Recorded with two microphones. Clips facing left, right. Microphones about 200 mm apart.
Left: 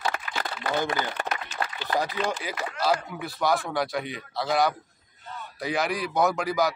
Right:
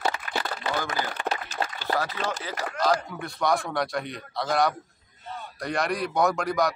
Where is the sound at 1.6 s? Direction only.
30° right (ahead or behind).